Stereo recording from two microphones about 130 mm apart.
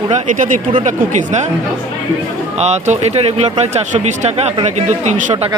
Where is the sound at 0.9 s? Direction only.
70° right (ahead or behind).